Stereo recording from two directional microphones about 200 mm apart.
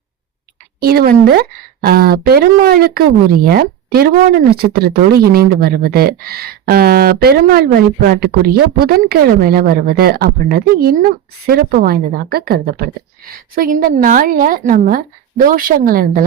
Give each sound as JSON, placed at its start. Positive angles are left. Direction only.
{"t": 0.8, "sound": "speech", "side_deg": -50}